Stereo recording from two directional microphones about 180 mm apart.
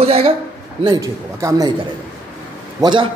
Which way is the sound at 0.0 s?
35° right (ahead or behind).